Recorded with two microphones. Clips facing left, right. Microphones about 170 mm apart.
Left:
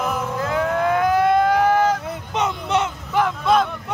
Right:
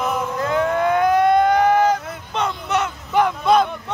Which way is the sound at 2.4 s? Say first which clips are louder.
Even; 20° left (ahead or behind).